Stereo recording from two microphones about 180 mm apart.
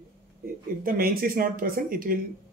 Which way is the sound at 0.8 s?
55° right (ahead or behind).